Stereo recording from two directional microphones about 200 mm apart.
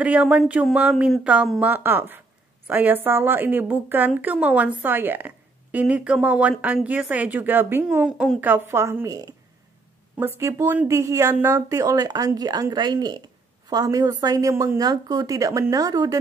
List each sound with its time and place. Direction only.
0.0 s speech: 5° right (ahead or behind)